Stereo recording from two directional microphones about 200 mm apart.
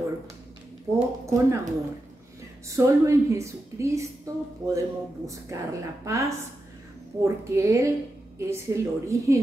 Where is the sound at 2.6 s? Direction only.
15° right (ahead or behind).